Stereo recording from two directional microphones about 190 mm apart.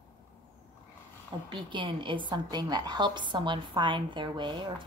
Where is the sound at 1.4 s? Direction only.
25° right (ahead or behind).